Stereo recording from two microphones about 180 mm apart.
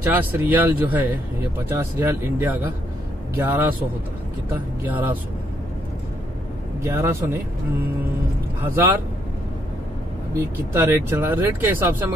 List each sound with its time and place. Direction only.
0.0 s speech: 10° right (ahead or behind)
4.8 s speech: 10° right (ahead or behind)
6.8 s speech: 15° right (ahead or behind)
8.7 s speech: 10° right (ahead or behind)
10.3 s speech: 15° right (ahead or behind)